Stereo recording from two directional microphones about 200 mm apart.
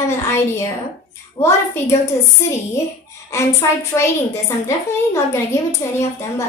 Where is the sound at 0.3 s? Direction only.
15° left (ahead or behind).